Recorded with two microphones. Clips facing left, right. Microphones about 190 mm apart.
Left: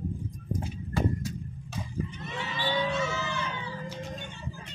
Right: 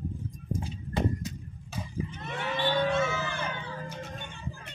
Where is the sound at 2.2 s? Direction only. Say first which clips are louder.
Right 5 dB; 55° right (ahead or behind).